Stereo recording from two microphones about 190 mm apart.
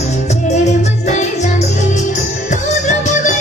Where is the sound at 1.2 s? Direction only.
35° left (ahead or behind).